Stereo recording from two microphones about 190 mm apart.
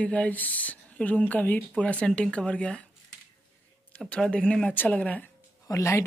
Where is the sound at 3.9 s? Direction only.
5° left (ahead or behind).